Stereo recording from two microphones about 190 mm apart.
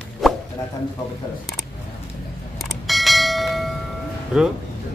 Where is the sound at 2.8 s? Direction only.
Centre (ahead or behind).